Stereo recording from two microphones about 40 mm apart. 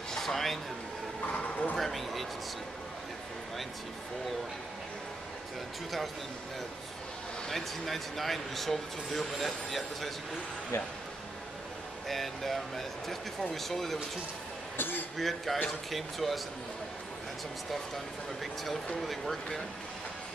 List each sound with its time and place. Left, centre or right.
0.1 s a sound: centre
1.2 s bow-wow: left
1.8 s speech: centre
7.4 s speech: centre
12.1 s speech: centre
14.8 s speech: left
15.1 s speech: centre
18.4 s speech: centre